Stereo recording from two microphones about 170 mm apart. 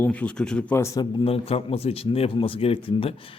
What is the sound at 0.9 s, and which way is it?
A man's voice, 35° left (ahead or behind).